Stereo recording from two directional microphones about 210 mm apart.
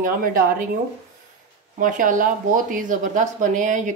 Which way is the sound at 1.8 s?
40° right (ahead or behind).